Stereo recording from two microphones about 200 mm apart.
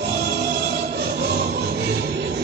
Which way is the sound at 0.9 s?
50° right (ahead or behind).